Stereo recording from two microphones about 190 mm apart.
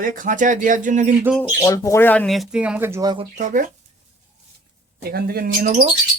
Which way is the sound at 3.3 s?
45° right (ahead or behind).